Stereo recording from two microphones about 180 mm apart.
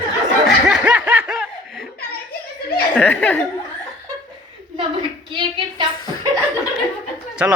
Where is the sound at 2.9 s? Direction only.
10° left (ahead or behind).